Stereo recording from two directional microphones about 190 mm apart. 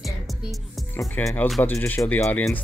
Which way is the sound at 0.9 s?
10° left (ahead or behind).